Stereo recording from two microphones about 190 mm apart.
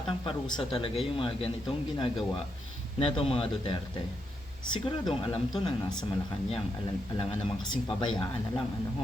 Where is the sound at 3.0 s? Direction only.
30° left (ahead or behind).